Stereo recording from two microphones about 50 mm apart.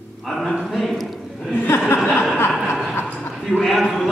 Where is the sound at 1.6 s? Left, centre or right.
Left.